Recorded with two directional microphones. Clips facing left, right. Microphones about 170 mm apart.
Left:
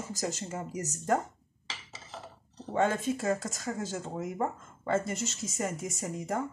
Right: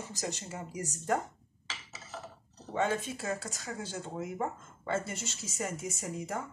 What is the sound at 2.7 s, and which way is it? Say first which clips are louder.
A woman's voice: left 4 dB; 45° left (ahead or behind).